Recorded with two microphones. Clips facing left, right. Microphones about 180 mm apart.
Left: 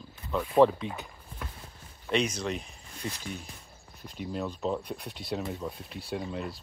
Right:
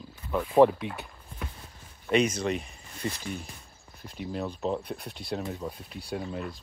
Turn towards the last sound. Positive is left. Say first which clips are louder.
# even
turn(degrees=0)  # may be behind; listen again after turning